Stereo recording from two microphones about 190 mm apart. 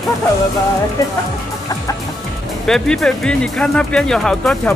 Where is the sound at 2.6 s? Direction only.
5° left (ahead or behind).